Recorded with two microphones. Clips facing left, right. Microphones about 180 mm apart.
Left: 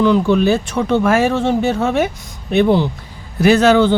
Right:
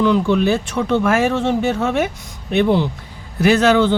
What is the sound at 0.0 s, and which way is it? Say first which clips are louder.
Speech: left 2 dB; 35° left (ahead or behind).